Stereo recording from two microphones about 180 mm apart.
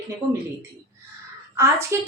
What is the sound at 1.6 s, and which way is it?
Speech, 15° right (ahead or behind).